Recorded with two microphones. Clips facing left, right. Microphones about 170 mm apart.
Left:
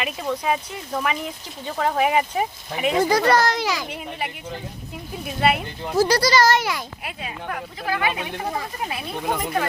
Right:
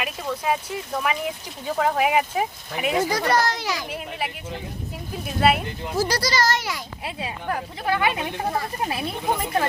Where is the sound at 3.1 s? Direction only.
70° left (ahead or behind); by 3.8 s 90° left.